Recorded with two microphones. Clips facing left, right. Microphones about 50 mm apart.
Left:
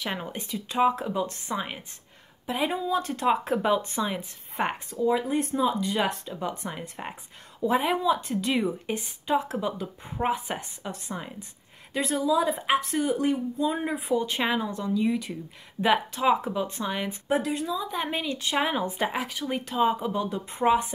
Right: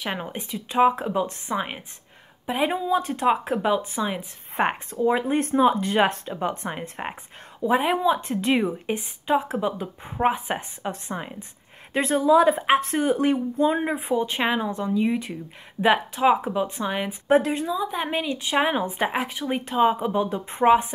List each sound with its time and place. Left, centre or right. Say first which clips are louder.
0.0 s a woman's voice: right 2 dB; centre
4.6 s a woman's voice: right 5 dB; right
5.0 s speech: right 3 dB; right
7.6 s a woman's voice: right 3 dB; centre; by 13.7 s right
13.7 s a woman's voice: right 3 dB; right
17.3 s speech: right 7 dB; right
17.6 s a woman's voice: right 3 dB; centre